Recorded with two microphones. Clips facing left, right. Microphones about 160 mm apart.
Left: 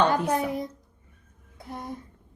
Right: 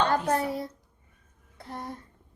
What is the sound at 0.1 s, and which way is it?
A woman's voice, 15° left (ahead or behind).